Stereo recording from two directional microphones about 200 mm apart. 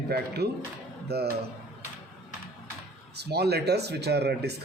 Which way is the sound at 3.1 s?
55° right (ahead or behind).